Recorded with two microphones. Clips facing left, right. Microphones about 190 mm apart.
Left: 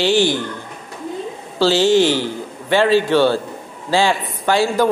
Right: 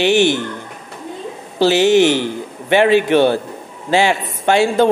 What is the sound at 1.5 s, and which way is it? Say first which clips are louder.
A man's voice: right 2 dB; 20° right (ahead or behind).